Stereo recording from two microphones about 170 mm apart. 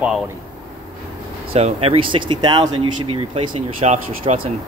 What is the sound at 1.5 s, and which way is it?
Speech, 35° right (ahead or behind).